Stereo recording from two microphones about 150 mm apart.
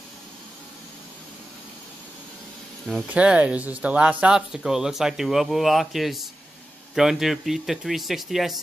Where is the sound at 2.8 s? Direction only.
5° right (ahead or behind).